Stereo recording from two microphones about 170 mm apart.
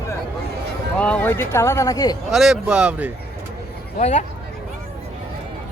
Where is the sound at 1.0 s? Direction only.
10° left (ahead or behind).